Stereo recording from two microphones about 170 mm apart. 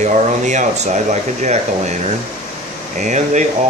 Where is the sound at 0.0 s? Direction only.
45° right (ahead or behind).